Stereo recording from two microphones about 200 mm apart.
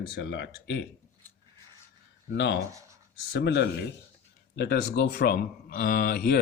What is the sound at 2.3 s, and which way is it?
Speech, 60° left (ahead or behind).